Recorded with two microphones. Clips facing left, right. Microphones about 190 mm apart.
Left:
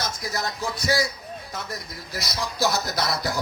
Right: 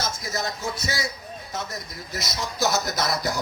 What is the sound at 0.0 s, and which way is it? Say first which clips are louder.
Speech: even; 25° right (ahead or behind).